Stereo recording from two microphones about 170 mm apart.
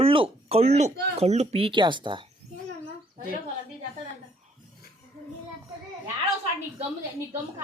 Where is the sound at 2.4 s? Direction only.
40° right (ahead or behind).